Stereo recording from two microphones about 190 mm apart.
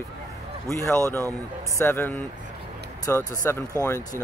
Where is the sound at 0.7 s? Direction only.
15° left (ahead or behind).